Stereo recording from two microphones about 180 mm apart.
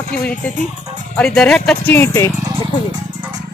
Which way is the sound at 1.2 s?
5° left (ahead or behind).